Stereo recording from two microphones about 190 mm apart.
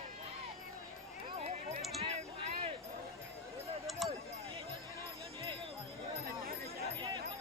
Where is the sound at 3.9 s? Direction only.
Centre (ahead or behind).